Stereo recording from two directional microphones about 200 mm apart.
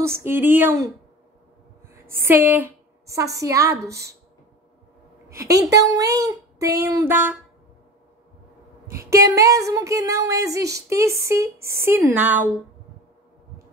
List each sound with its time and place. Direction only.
0.0 s speech: 10° right (ahead or behind)
2.1 s a woman's voice: 10° right (ahead or behind)
5.5 s speech: 15° right (ahead or behind)
9.1 s speech: 15° right (ahead or behind)